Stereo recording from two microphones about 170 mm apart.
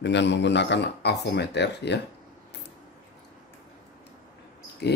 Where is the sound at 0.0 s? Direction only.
90° left.